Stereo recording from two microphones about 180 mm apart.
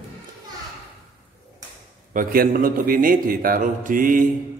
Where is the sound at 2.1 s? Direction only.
50° right (ahead or behind).